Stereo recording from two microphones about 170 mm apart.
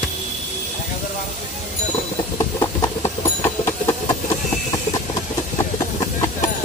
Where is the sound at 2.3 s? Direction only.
20° left (ahead or behind).